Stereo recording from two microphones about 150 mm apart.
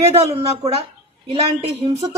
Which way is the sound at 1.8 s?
45° right (ahead or behind).